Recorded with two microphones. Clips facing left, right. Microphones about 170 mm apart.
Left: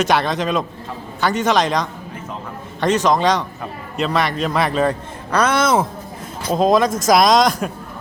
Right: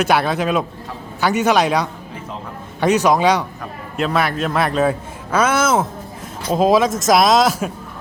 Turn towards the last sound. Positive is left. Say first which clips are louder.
# even
turn(degrees=-5)  # may be behind; listen again after turning